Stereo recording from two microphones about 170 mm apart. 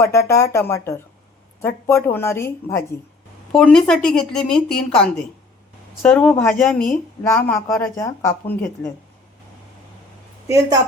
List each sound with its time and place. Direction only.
0.0 s a woman's voice: 15° left (ahead or behind)
3.5 s a woman's voice: 5° left (ahead or behind)
10.4 s a woman's voice: 20° right (ahead or behind)